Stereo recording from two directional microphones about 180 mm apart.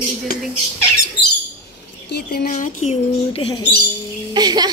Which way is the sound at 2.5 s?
40° left (ahead or behind).